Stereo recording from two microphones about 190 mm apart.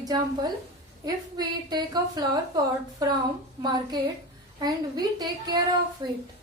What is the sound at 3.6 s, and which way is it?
A woman's voice, 20° right (ahead or behind).